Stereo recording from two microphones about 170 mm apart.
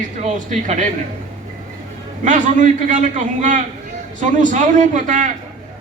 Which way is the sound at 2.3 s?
50° right (ahead or behind).